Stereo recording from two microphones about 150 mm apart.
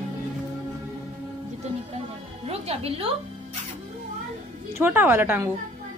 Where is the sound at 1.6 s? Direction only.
45° right (ahead or behind).